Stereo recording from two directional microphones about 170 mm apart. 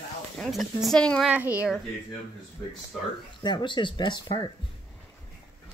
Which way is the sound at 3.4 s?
25° left (ahead or behind).